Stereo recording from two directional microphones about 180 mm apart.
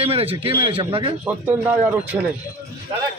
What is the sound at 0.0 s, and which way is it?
Speech, 30° right (ahead or behind).